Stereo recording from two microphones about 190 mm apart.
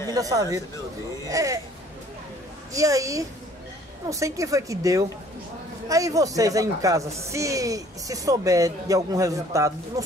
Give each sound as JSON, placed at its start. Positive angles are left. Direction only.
{"t": 0.1, "sound": "speech", "side_deg": -20}
{"t": 2.7, "sound": "speech", "side_deg": -15}